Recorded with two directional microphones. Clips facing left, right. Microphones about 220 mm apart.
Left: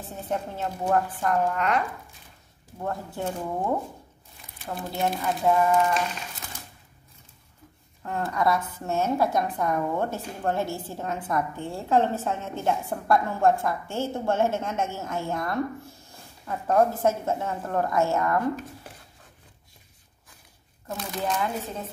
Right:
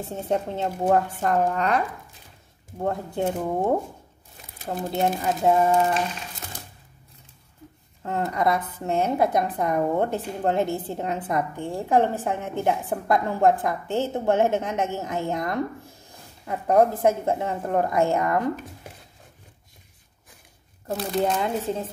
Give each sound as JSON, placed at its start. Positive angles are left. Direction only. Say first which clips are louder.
{"t": 0.1, "sound": "a woman's voice", "louder": "right 5 dB", "side_deg": -20}
{"t": 1.2, "sound": "speech", "louder": "right 2 dB", "side_deg": -35}
{"t": 2.8, "sound": "a woman's voice", "louder": "right 5 dB", "side_deg": -20}
{"t": 4.7, "sound": "speech", "louder": "right 4 dB", "side_deg": -35}
{"t": 5.4, "sound": "a woman's voice", "louder": "right 2 dB", "side_deg": -25}
{"t": 8.0, "sound": "a woman's voice", "louder": "right 2 dB", "side_deg": -20}
{"t": 20.8, "sound": "speech", "louder": "right 6 dB", "side_deg": -35}